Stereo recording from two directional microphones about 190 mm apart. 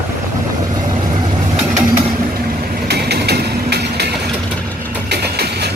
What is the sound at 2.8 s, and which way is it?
Vehicle, 60° right (ahead or behind).